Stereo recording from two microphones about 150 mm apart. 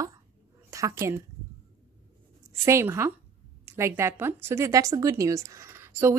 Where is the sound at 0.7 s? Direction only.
20° right (ahead or behind).